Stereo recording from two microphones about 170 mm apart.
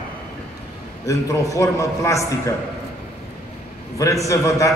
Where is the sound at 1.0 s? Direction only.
20° left (ahead or behind).